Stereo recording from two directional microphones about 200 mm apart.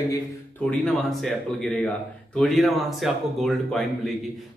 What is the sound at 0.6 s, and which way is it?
Speech, centre (ahead or behind).